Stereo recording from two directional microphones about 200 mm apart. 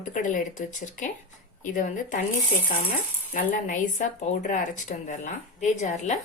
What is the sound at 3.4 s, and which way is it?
Speech, 40° left (ahead or behind).